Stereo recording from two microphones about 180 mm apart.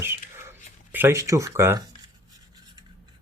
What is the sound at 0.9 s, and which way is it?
Speech, 15° right (ahead or behind).